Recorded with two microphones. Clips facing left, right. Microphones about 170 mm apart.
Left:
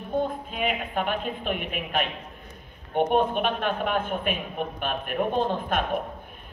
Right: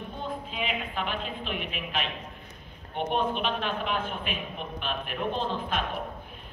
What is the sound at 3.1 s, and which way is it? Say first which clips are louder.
A man's voice: left 1 dB; 50° left (ahead or behind).